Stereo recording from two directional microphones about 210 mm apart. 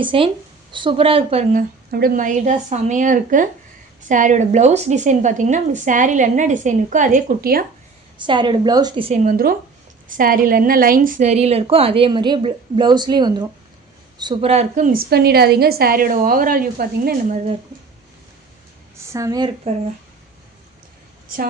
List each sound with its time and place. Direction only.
0.0 s a woman's voice: 25° right (ahead or behind)
1.9 s a woman's voice: 45° right (ahead or behind)
8.2 s a woman's voice: 20° right (ahead or behind)
19.1 s a woman's voice: 15° right (ahead or behind)